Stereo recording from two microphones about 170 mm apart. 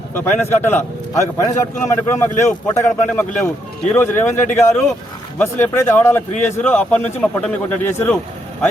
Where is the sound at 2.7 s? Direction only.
15° left (ahead or behind).